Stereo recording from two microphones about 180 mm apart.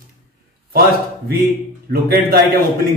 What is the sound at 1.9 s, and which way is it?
Speech, 60° right (ahead or behind).